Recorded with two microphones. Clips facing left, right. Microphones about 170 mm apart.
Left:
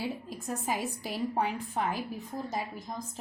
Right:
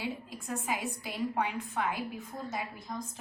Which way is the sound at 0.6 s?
40° left (ahead or behind).